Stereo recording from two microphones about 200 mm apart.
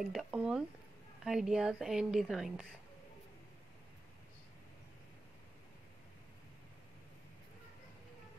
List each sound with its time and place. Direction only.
0.1 s a woman's voice: 5° right (ahead or behind)